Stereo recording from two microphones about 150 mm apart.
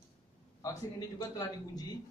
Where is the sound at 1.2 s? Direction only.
25° left (ahead or behind).